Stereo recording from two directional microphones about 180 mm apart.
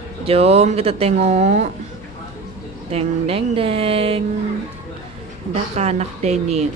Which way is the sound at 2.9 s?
30° right (ahead or behind).